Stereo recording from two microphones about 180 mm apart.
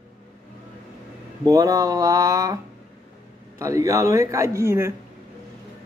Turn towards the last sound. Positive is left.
turn(degrees=-15)  # may be behind; listen again after turning